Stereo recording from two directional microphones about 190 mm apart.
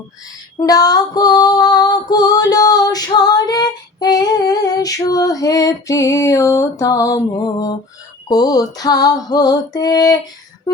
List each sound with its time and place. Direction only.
0.6 s female singing: 20° left (ahead or behind)
8.3 s music: 20° left (ahead or behind)